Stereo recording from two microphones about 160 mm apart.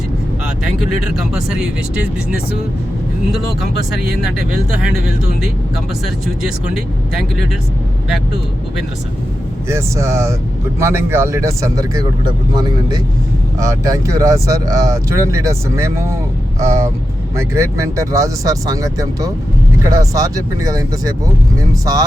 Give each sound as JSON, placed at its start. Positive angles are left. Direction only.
{"t": 0.4, "sound": "speech", "side_deg": -5}
{"t": 4.0, "sound": "speech", "side_deg": -5}
{"t": 9.6, "sound": "speech", "side_deg": -20}